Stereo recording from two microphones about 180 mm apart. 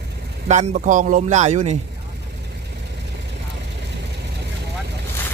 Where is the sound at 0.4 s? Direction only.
40° right (ahead or behind).